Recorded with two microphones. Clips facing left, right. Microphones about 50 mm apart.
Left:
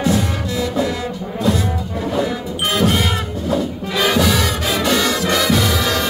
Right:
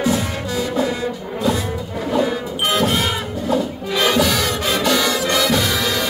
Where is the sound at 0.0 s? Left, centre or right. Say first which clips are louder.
Left 1 dB; centre.